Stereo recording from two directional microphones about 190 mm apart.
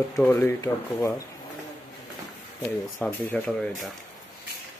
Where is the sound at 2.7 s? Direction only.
10° left (ahead or behind).